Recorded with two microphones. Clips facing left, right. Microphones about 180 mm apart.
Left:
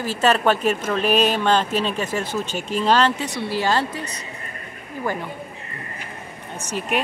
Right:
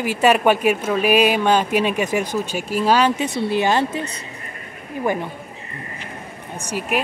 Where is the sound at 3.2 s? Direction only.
20° right (ahead or behind).